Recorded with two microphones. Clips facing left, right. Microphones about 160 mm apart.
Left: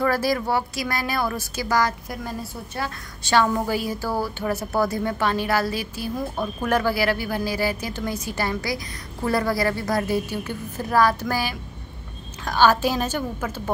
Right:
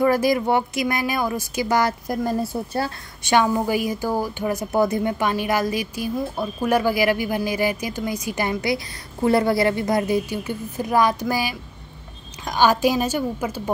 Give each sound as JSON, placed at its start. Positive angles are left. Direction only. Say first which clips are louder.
{"t": 0.0, "sound": "a woman's voice", "louder": "right 4 dB", "side_deg": -15}
{"t": 2.0, "sound": "a woman's voice", "louder": "right 8 dB", "side_deg": -40}
{"t": 3.3, "sound": "a woman's voice", "louder": "right 2 dB", "side_deg": -15}